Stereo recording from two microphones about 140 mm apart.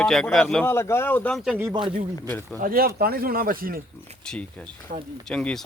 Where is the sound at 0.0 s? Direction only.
Centre (ahead or behind).